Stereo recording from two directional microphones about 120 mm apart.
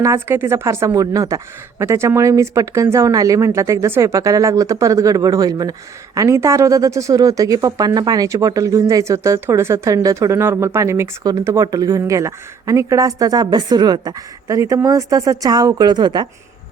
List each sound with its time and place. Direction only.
0.0 s a woman's voice: 20° right (ahead or behind); by 16.2 s 40° right (ahead or behind)